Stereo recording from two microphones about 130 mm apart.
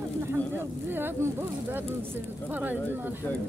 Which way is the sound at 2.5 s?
15° right (ahead or behind).